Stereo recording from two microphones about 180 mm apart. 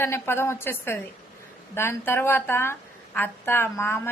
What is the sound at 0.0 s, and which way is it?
Speech, 15° left (ahead or behind).